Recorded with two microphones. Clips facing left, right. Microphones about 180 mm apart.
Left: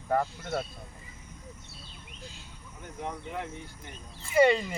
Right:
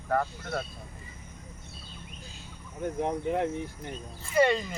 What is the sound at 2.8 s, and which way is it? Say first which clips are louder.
Speech: right 9 dB; 45° right (ahead or behind).